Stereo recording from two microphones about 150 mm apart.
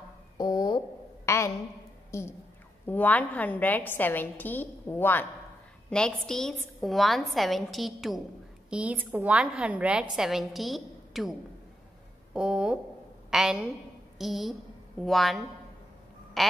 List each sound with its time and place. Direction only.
0.4 s a sound: 25° left (ahead or behind)
2.9 s a woman's voice: 10° left (ahead or behind)
12.4 s a woman's voice: 5° right (ahead or behind)